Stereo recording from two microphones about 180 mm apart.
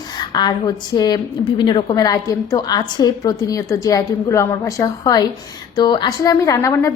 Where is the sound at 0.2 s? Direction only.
25° left (ahead or behind).